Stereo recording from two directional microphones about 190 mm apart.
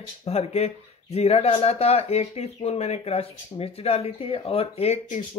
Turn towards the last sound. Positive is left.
turn(degrees=35)  # may be behind; listen again after turning